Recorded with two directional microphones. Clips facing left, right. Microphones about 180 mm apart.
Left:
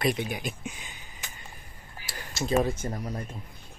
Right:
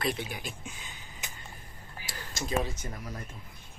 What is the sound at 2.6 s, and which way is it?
Speech, 50° left (ahead or behind).